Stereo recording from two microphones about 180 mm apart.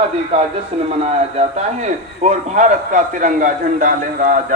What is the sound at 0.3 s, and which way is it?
A man's voice, 30° right (ahead or behind).